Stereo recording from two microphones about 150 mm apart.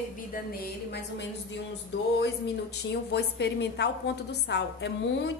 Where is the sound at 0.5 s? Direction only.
90° left.